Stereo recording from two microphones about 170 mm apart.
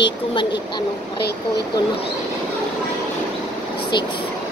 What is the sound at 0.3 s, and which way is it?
Speech, 30° left (ahead or behind).